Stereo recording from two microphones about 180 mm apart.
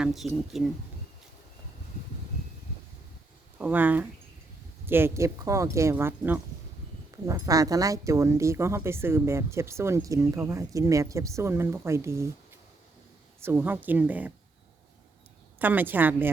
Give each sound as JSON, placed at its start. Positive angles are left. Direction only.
{"t": 0.0, "sound": "speech", "side_deg": 0}
{"t": 3.6, "sound": "speech", "side_deg": -10}
{"t": 13.4, "sound": "speech", "side_deg": -10}
{"t": 15.5, "sound": "speech", "side_deg": -10}